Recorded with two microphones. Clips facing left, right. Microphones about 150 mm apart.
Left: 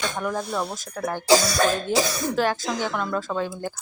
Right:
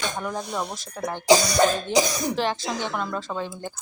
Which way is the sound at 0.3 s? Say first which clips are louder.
Left 2 dB; 15° right (ahead or behind).